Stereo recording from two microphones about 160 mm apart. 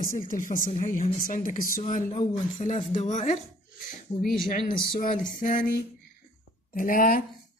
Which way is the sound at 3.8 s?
55° left (ahead or behind).